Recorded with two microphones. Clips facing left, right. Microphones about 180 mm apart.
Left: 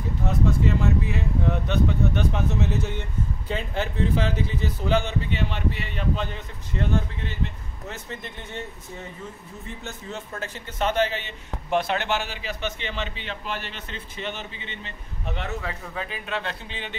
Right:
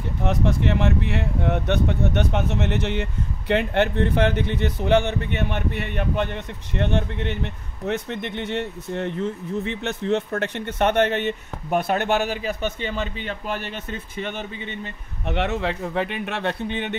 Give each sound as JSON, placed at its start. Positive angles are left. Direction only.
{"t": 0.2, "sound": "a man's voice", "side_deg": -80}
{"t": 15.2, "sound": "speech", "side_deg": -75}